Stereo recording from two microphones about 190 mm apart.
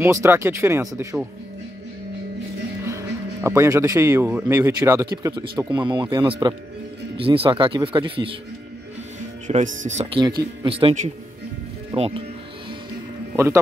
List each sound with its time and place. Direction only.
0.0 s speech: 15° right (ahead or behind)
2.8 s speech: 15° right (ahead or behind)
9.5 s speech: 40° right (ahead or behind)